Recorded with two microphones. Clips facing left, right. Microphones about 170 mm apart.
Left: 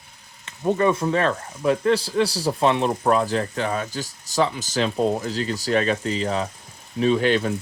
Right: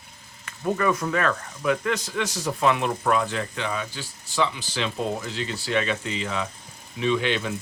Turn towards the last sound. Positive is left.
turn(degrees=40)  # may be behind; listen again after turning